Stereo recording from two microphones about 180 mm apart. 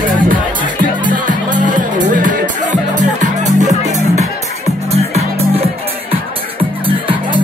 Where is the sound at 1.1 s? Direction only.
45° right (ahead or behind).